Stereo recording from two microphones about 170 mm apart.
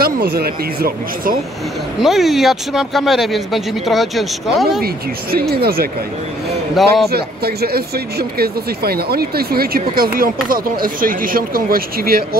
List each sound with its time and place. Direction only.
0.0 s speech: 65° right (ahead or behind)
2.0 s speech: centre (ahead or behind)
5.5 s speech: 65° right (ahead or behind)
6.7 s speech: centre (ahead or behind)
7.1 s speech: 65° right (ahead or behind)